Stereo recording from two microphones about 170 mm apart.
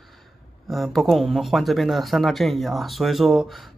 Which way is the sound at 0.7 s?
Centre (ahead or behind).